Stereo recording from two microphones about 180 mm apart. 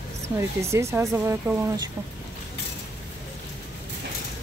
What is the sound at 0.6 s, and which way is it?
Speech, 15° right (ahead or behind).